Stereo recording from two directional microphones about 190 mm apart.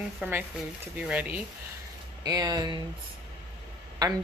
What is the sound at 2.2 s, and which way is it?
Speech, 20° right (ahead or behind).